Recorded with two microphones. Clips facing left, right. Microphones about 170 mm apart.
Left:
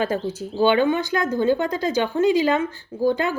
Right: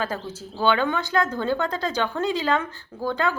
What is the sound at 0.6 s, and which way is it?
Speech, 15° left (ahead or behind).